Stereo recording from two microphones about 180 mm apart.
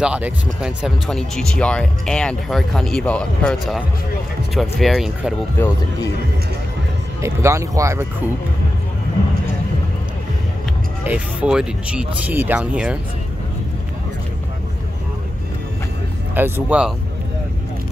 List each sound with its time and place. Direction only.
0.0 s speech: 5° right (ahead or behind)
7.2 s speech: 15° right (ahead or behind)
11.1 s speech: 5° right (ahead or behind)
16.3 s speech: 10° right (ahead or behind)